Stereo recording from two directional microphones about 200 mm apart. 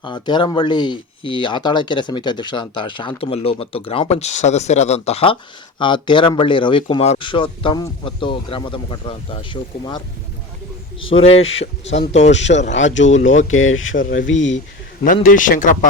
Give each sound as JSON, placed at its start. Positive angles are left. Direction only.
{"t": 0.0, "sound": "speech", "side_deg": 25}
{"t": 11.1, "sound": "speech", "side_deg": 30}
{"t": 12.7, "sound": "speech", "side_deg": 70}
{"t": 13.1, "sound": "speech", "side_deg": 35}
{"t": 13.3, "sound": "speech", "side_deg": 80}
{"t": 15.0, "sound": "speech", "side_deg": 40}